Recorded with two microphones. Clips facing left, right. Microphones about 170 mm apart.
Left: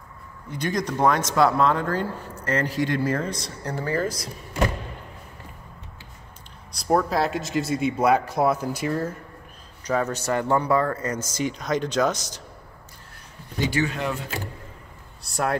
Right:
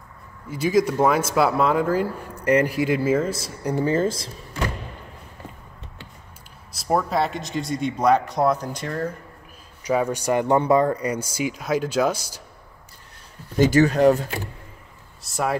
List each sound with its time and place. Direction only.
0.5 s speech: 5° right (ahead or behind)
3.7 s speech: 20° right (ahead or behind)
6.7 s speech: centre (ahead or behind)
9.8 s speech: 10° right (ahead or behind)
13.6 s speech: 40° right (ahead or behind)
15.2 s speech: centre (ahead or behind)